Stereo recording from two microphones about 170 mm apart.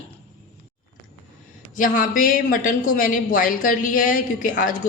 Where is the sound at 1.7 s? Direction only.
50° left (ahead or behind).